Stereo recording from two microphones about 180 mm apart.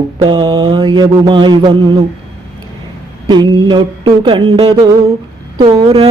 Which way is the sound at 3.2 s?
25° right (ahead or behind).